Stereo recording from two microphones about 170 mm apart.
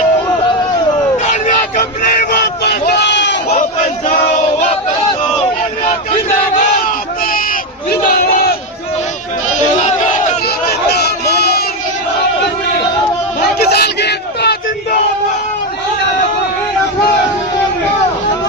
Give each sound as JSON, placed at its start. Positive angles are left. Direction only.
{"t": 1.2, "sound": "a sound", "side_deg": 50}
{"t": 2.3, "sound": "crowd", "side_deg": 80}
{"t": 4.1, "sound": "female singing", "side_deg": 55}
{"t": 7.9, "sound": "crowd", "side_deg": 55}
{"t": 9.8, "sound": "battle cry", "side_deg": 45}
{"t": 10.7, "sound": "crowd", "side_deg": 70}
{"t": 13.7, "sound": "battle cry", "side_deg": 70}